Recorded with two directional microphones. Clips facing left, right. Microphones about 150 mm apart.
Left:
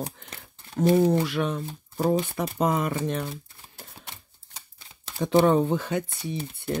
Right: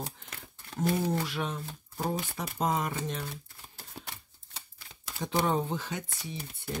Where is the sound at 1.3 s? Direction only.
65° left (ahead or behind).